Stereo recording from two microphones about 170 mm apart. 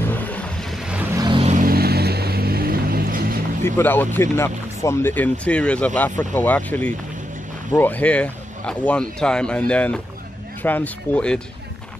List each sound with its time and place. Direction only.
0.0 s vehicle: 10° left (ahead or behind)
1.1 s vehicle: 25° right (ahead or behind)
1.4 s vehicle: 45° right (ahead or behind)
1.7 s music: 65° right (ahead or behind)
3.6 s speech: 10° left (ahead or behind)